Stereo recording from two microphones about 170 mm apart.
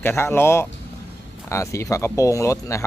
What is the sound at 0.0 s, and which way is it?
A man's voice, 15° left (ahead or behind).